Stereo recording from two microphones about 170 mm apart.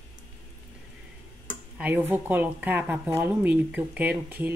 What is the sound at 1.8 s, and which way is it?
Speech, 10° right (ahead or behind).